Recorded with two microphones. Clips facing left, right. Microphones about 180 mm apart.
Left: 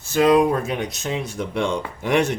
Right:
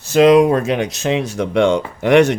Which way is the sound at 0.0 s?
80° right.